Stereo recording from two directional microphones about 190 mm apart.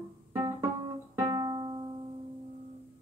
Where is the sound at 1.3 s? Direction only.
20° right (ahead or behind).